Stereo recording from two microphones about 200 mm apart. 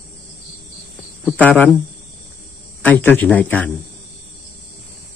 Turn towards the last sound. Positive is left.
turn(degrees=10)  # may be behind; listen again after turning